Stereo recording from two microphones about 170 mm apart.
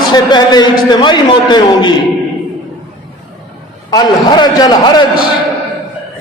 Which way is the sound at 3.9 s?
25° left (ahead or behind).